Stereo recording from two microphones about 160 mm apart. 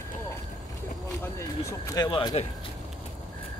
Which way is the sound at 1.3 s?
20° left (ahead or behind).